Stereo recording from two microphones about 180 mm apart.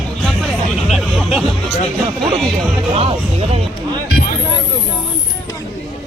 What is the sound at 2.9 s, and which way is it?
Music, 35° right (ahead or behind).